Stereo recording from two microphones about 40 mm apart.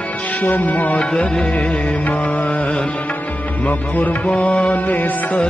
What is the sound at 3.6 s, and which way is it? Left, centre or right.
Music, left.